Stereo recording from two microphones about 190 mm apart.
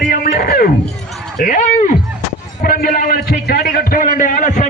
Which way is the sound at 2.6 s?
50° left (ahead or behind).